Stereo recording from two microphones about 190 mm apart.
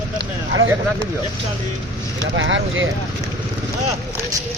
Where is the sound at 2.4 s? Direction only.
85° right.